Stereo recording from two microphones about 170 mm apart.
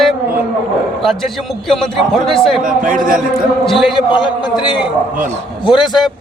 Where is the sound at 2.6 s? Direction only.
50° right (ahead or behind).